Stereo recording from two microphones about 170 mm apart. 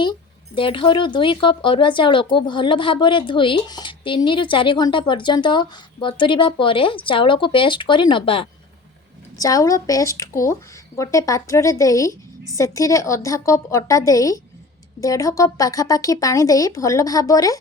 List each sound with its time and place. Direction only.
0.0 s speech: 30° left (ahead or behind)
9.4 s speech: 20° left (ahead or behind)